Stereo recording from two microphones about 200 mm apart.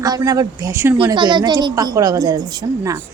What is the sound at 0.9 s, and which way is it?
A woman's voice, 25° right (ahead or behind).